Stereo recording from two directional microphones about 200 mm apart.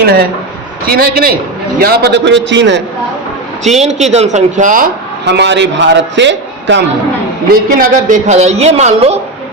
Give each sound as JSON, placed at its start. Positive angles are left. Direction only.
{"t": 0.0, "sound": "a man's voice", "side_deg": -50}
{"t": 3.6, "sound": "a man's voice", "side_deg": -35}
{"t": 5.2, "sound": "a man's voice", "side_deg": -60}
{"t": 7.5, "sound": "a man's voice", "side_deg": -45}